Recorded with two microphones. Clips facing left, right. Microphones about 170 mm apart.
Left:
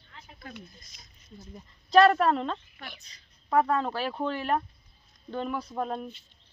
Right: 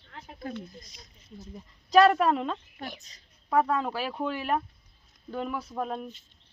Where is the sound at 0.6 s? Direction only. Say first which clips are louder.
Right 6 dB; 30° right (ahead or behind).